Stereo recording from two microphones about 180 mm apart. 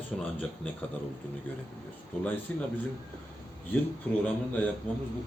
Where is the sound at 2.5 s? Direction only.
10° left (ahead or behind).